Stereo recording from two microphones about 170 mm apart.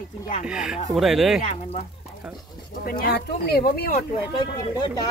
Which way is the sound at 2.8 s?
60° left (ahead or behind).